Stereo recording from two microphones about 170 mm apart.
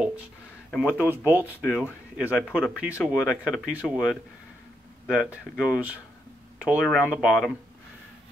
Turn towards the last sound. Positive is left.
turn(degrees=0)  # may be behind; listen again after turning